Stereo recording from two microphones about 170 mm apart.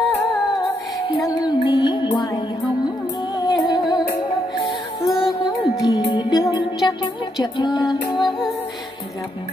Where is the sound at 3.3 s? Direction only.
25° left (ahead or behind).